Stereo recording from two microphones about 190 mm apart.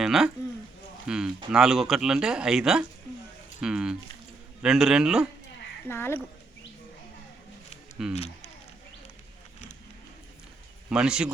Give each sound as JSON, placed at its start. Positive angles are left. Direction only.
{"t": 0.0, "sound": "speech", "side_deg": -5}
{"t": 5.9, "sound": "speech", "side_deg": 10}
{"t": 8.1, "sound": "speech", "side_deg": 35}
{"t": 10.8, "sound": "speech", "side_deg": -5}